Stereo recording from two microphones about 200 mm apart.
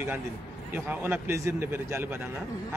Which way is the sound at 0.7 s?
10° right (ahead or behind).